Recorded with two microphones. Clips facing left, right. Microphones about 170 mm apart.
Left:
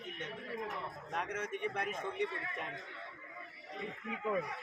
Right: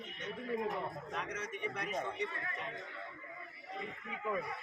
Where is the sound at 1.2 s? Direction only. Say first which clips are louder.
Left 5 dB; 55° left (ahead or behind).